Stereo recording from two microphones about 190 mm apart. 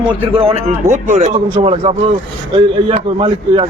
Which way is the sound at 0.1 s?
30° right (ahead or behind).